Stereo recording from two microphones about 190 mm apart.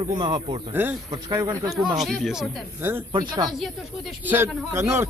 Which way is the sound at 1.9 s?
Centre (ahead or behind).